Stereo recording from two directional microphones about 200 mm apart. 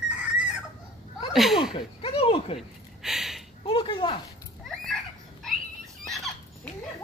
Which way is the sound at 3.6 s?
25° left (ahead or behind).